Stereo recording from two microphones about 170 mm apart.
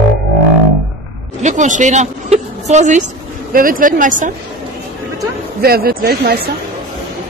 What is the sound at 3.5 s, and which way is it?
Speech, 55° right (ahead or behind).